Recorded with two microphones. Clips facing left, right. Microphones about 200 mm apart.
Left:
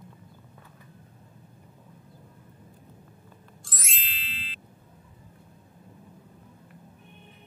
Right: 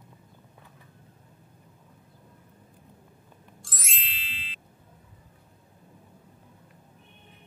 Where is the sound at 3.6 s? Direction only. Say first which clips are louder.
Even; centre (ahead or behind).